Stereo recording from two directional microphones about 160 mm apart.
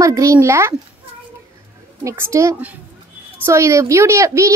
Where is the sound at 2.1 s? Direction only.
15° right (ahead or behind).